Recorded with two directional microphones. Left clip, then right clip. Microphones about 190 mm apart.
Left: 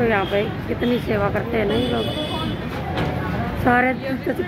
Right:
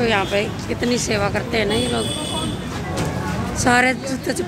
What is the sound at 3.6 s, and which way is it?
Speech, 10° right (ahead or behind).